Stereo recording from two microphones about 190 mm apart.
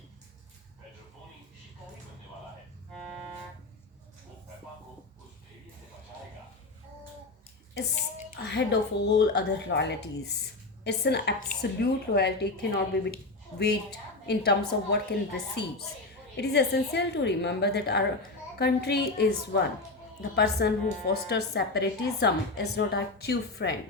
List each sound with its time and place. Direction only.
8.4 s a woman's voice: 65° left (ahead or behind)
14.3 s a woman's voice: 60° left (ahead or behind)